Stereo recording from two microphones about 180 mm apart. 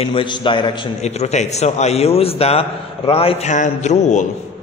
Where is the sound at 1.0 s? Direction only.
40° left (ahead or behind).